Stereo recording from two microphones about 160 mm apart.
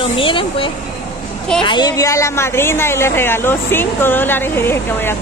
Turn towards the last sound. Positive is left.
turn(degrees=15)  # may be behind; listen again after turning